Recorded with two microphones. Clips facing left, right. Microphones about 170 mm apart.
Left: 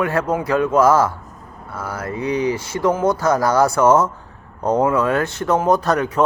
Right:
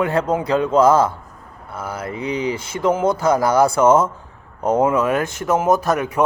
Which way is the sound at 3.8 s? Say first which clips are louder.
Even; 20° right (ahead or behind).